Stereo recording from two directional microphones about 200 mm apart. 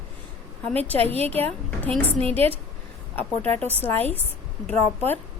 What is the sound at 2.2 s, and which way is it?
Speech, 30° right (ahead or behind).